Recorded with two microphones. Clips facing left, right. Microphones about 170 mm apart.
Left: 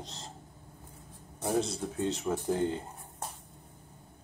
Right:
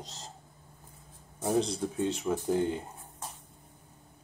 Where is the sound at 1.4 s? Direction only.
15° right (ahead or behind).